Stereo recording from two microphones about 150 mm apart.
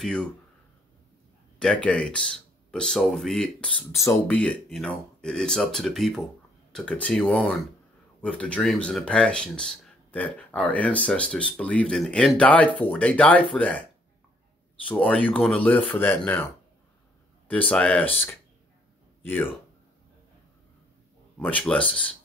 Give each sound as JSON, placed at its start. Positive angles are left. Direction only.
{"t": 0.0, "sound": "speech", "side_deg": 5}
{"t": 1.6, "sound": "speech", "side_deg": 5}
{"t": 3.9, "sound": "speech", "side_deg": 20}
{"t": 4.3, "sound": "speech", "side_deg": 10}
{"t": 14.9, "sound": "speech", "side_deg": 10}
{"t": 17.5, "sound": "speech", "side_deg": 10}
{"t": 21.4, "sound": "speech", "side_deg": 10}